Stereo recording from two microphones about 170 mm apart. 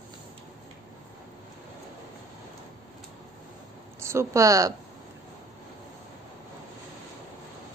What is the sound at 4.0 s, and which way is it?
Speech, 15° right (ahead or behind).